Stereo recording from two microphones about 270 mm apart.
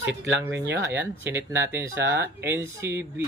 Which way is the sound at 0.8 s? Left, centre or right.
Centre.